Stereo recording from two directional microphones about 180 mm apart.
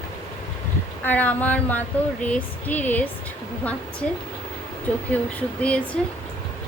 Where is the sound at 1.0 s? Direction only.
10° left (ahead or behind).